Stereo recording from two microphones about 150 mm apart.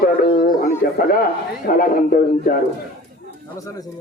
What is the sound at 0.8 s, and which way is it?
Speech, 90° left.